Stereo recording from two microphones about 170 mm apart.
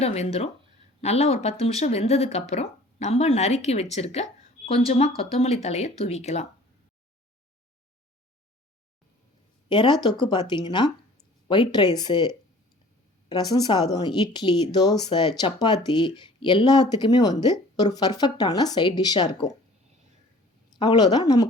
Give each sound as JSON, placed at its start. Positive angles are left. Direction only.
{"t": 0.0, "sound": "speech", "side_deg": 40}
{"t": 9.6, "sound": "speech", "side_deg": 25}
{"t": 20.7, "sound": "speech", "side_deg": 25}